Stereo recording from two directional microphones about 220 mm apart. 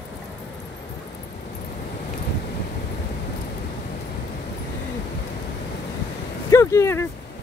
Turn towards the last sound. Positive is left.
turn(degrees=10)  # may be behind; listen again after turning